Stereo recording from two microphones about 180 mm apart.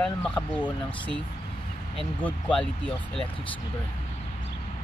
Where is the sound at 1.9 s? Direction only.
5° left (ahead or behind).